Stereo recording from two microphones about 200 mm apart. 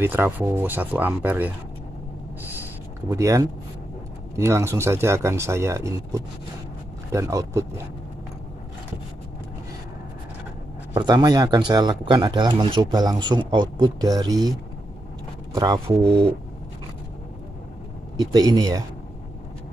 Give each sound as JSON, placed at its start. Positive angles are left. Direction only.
{"t": 0.0, "sound": "speech", "side_deg": -10}
{"t": 3.1, "sound": "speech", "side_deg": -15}
{"t": 11.0, "sound": "speech", "side_deg": -20}
{"t": 18.1, "sound": "speech", "side_deg": -20}